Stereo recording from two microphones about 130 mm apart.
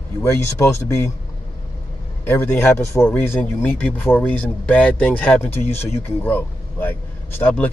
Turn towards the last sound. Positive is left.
turn(degrees=10)  # may be behind; listen again after turning